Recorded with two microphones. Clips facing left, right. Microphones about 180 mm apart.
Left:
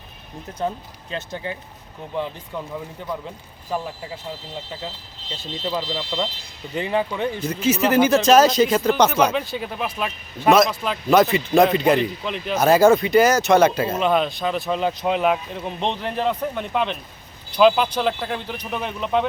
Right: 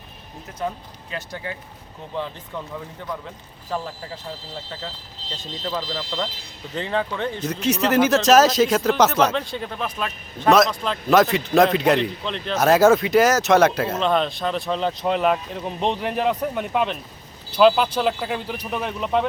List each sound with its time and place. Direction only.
1.1 s speech: 25° left (ahead or behind)
5.2 s vehicle: 35° right (ahead or behind)
6.7 s speech: 15° left (ahead or behind)